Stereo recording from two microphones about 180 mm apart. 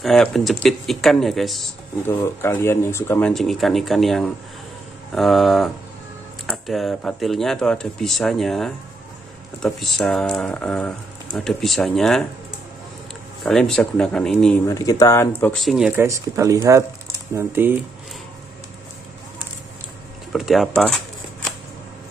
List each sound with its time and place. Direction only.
0.0 s speech: centre (ahead or behind)
2.0 s speech: 15° left (ahead or behind)
13.4 s speech: centre (ahead or behind)
14.7 s speech: 20° left (ahead or behind)
15.6 s speech: centre (ahead or behind)
16.0 s speech: 15° right (ahead or behind)
20.3 s speech: centre (ahead or behind)